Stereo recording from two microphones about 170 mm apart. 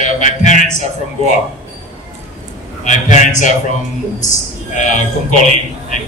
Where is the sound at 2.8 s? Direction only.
45° left (ahead or behind).